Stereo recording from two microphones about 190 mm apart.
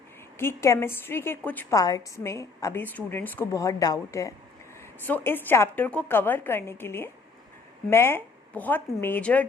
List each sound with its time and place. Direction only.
0.3 s a woman's voice: 15° left (ahead or behind)